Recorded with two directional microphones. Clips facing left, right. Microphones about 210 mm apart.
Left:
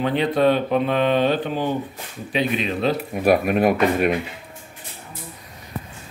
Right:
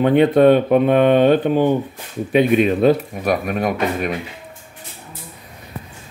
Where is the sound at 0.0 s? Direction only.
55° right (ahead or behind).